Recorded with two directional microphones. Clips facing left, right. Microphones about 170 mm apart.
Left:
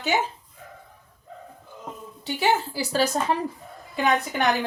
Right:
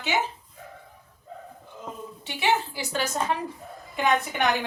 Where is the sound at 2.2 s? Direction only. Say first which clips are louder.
Left 2 dB; 35° left (ahead or behind).